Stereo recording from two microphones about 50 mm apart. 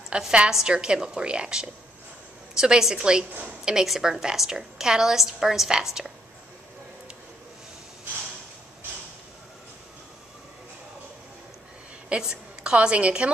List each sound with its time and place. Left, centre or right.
0.3 s a woman's voice: centre
12.1 s a woman's voice: centre